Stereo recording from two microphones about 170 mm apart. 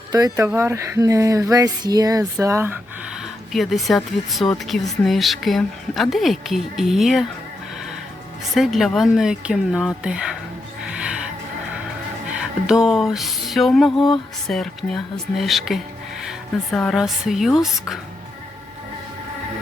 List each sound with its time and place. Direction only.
0.1 s speech: 20° right (ahead or behind)
3.5 s speech: centre (ahead or behind)
8.5 s speech: centre (ahead or behind)
10.8 s music: 5° right (ahead or behind)
12.3 s speech: 5° right (ahead or behind)